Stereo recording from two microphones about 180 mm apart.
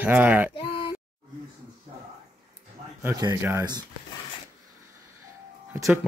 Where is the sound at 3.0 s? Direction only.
20° right (ahead or behind).